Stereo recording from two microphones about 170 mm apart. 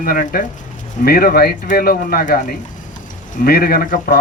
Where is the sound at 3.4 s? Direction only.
60° left (ahead or behind).